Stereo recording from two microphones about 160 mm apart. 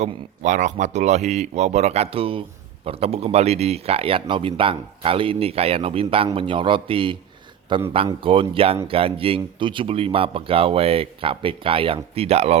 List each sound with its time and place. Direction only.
0.0 s speech: 45° right (ahead or behind)